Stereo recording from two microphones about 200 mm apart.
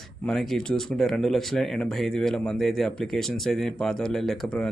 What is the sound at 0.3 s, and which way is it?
Speech, 5° left (ahead or behind).